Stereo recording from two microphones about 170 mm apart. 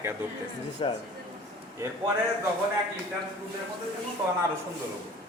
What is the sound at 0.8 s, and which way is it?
Speech, 30° left (ahead or behind).